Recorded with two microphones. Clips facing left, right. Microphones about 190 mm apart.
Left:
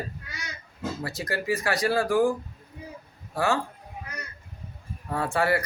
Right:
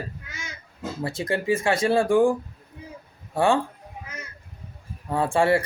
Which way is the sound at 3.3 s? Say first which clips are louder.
Right 5 dB; 30° right (ahead or behind).